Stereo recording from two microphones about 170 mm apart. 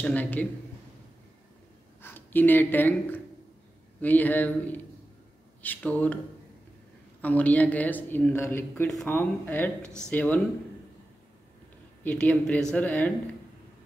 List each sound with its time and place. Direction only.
0.0 s speech: 10° left (ahead or behind)
2.0 s speech: 10° left (ahead or behind)
7.2 s speech: 10° left (ahead or behind)
9.8 s speech: 15° right (ahead or behind)
10.0 s speech: 10° left (ahead or behind)
12.0 s speech: 10° left (ahead or behind)